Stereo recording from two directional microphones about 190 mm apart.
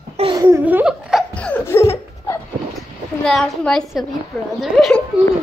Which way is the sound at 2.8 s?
5° left (ahead or behind).